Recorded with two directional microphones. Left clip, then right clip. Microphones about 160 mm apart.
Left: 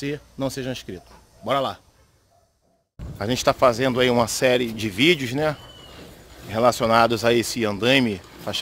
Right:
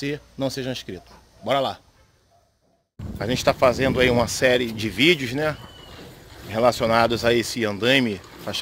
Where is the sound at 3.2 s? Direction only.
25° left (ahead or behind).